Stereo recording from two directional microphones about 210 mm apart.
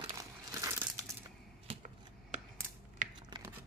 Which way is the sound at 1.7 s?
35° right (ahead or behind).